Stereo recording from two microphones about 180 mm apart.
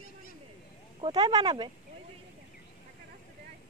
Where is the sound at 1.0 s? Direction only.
25° right (ahead or behind).